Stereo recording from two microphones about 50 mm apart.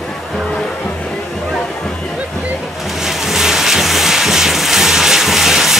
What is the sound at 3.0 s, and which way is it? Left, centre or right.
Vehicle, centre.